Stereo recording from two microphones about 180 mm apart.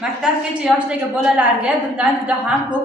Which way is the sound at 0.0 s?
5° right (ahead or behind).